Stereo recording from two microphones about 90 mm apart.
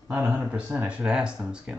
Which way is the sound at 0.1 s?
20° right (ahead or behind).